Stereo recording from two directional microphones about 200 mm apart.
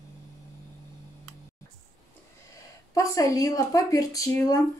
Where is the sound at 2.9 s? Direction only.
15° left (ahead or behind).